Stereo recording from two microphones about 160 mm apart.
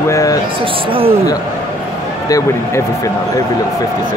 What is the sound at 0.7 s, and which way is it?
Speech, 35° right (ahead or behind).